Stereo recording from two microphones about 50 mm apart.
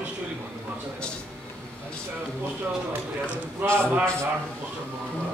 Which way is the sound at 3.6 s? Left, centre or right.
Right.